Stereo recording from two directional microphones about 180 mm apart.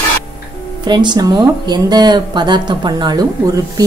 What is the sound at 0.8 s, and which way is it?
Speech, 25° right (ahead or behind).